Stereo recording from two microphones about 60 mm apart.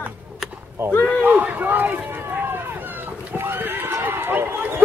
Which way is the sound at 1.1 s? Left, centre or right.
Right.